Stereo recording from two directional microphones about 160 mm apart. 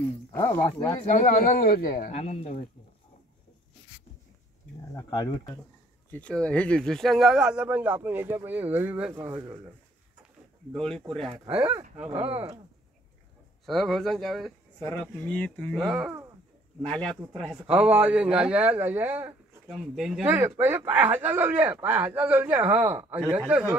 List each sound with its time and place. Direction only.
0.3 s speech: 15° left (ahead or behind)
1.0 s speech: 50° left (ahead or behind)
2.1 s speech: 40° left (ahead or behind)
5.1 s speech: 25° left (ahead or behind)
6.1 s speech: 5° left (ahead or behind); by 9.1 s 10° right (ahead or behind)
9.1 s speech: 20° right (ahead or behind)
10.7 s speech: 5° left (ahead or behind)
11.4 s speech: 10° right (ahead or behind)
13.7 s speech: centre (ahead or behind)
15.9 s speech: 5° right (ahead or behind)
16.8 s speech: 5° left (ahead or behind)